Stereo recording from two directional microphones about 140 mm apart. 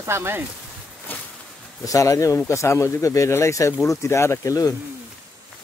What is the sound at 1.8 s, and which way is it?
Speech, 25° left (ahead or behind).